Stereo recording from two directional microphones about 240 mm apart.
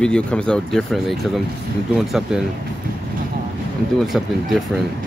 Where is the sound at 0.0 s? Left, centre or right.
Centre.